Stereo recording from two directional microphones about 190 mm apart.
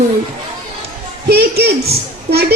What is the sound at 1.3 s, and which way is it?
Speech, 60° right (ahead or behind).